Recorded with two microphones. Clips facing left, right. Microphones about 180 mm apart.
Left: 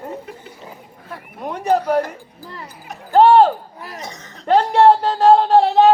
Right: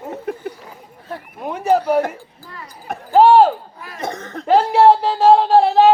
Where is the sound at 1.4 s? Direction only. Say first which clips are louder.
Right 1 dB; 5° right (ahead or behind).